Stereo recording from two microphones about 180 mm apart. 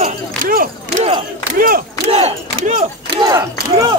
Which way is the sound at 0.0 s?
45° right (ahead or behind).